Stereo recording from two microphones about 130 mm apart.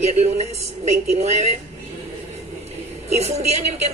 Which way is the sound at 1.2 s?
55° right (ahead or behind).